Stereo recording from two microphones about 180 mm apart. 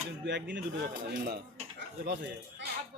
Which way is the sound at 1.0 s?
60° right (ahead or behind).